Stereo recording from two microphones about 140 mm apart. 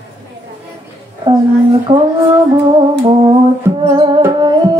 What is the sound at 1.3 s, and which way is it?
Speech, 40° right (ahead or behind).